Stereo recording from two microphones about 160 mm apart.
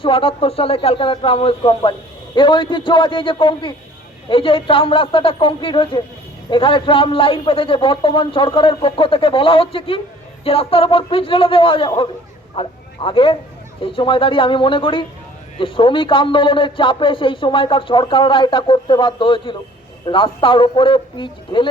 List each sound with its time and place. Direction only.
0.0 s a man's voice: 35° left (ahead or behind)